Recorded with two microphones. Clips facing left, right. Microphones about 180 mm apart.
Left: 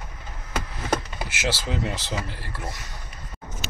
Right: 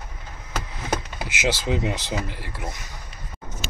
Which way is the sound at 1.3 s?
15° right (ahead or behind).